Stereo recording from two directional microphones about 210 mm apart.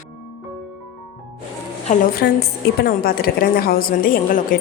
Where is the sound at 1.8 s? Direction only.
45° left (ahead or behind).